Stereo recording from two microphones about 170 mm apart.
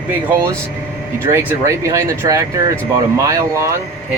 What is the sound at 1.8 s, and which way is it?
Speech, 20° right (ahead or behind).